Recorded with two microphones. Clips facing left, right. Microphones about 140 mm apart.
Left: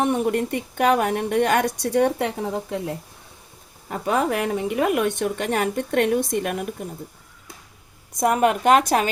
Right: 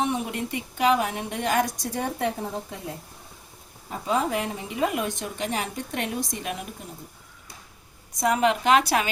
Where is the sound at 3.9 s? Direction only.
65° left (ahead or behind).